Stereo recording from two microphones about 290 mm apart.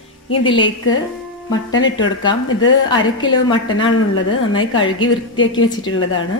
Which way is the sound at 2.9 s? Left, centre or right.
Centre.